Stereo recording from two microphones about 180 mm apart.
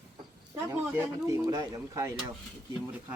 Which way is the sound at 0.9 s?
15° right (ahead or behind).